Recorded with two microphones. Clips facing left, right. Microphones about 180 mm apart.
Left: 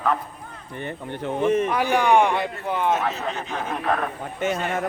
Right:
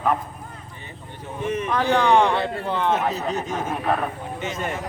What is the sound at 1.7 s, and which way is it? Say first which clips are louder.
Speech: even; 15° left (ahead or behind).